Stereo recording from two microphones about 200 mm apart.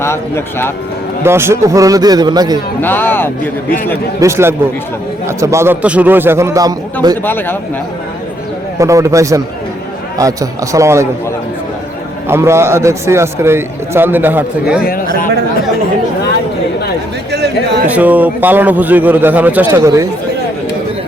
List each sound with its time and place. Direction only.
0.0 s speech: 10° left (ahead or behind)
1.2 s a man's voice: 10° right (ahead or behind)
2.8 s speech: 10° left (ahead or behind)
4.2 s a man's voice: 15° right (ahead or behind)
7.3 s speech: 10° left (ahead or behind)
8.8 s a man's voice: 15° right (ahead or behind)
12.3 s a man's voice: 15° right (ahead or behind)
14.8 s speech: 45° left (ahead or behind)
17.3 s chatter: 55° right (ahead or behind)
17.8 s a man's voice: 10° right (ahead or behind)